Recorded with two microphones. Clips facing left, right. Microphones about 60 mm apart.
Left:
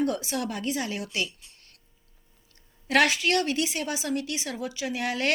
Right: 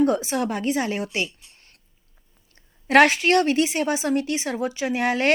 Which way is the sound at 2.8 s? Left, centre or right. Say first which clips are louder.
Right 7 dB; right.